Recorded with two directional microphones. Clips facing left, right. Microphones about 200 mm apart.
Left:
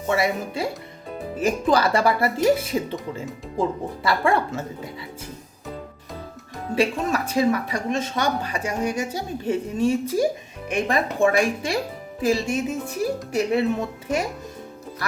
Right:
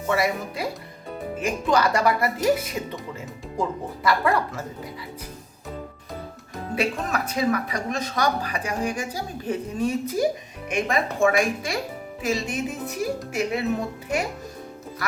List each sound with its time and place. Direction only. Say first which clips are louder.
0.1 s speech: left 1 dB; 25° left (ahead or behind)
6.7 s speech: left 4 dB; 30° left (ahead or behind)